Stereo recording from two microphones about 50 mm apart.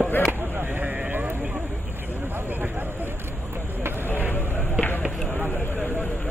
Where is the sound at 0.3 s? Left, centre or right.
Right.